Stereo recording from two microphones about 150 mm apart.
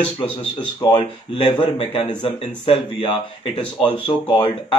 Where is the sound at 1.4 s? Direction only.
35° left (ahead or behind).